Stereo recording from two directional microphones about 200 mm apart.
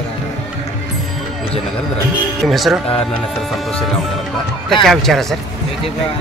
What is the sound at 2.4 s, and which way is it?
Speech, centre (ahead or behind).